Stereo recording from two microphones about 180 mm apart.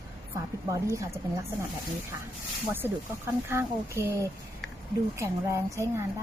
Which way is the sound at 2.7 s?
10° right (ahead or behind).